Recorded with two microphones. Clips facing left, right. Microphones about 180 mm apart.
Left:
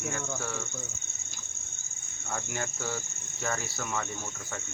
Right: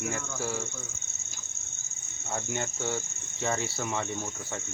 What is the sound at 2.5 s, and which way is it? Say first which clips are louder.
Cricket: right 4 dB; 25° right (ahead or behind).